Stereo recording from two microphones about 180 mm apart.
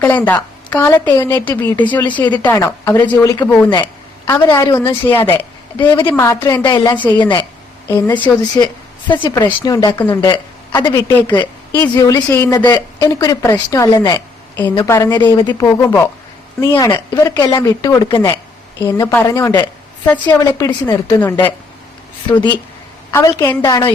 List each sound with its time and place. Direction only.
0.0 s a woman's voice: 10° left (ahead or behind)
23.1 s speech: 15° left (ahead or behind)